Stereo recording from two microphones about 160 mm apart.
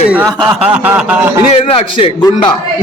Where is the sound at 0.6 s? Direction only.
10° right (ahead or behind).